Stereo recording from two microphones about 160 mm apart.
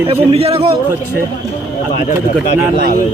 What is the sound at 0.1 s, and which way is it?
Speech, 35° right (ahead or behind).